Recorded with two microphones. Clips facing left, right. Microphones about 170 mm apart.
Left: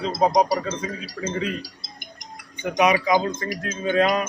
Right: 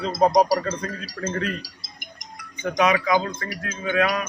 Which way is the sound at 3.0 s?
20° left (ahead or behind).